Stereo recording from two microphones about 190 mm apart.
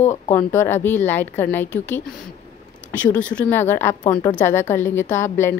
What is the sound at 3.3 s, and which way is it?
A woman's voice, 10° left (ahead or behind).